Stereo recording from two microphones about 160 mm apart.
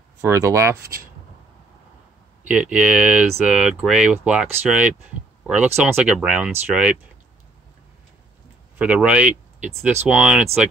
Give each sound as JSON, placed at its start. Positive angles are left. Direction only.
{"t": 0.2, "sound": "speech", "side_deg": -15}
{"t": 2.4, "sound": "speech", "side_deg": -10}
{"t": 8.7, "sound": "speech", "side_deg": -10}